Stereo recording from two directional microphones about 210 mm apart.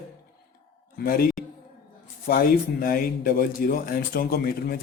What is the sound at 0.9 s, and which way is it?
Speech, 45° left (ahead or behind).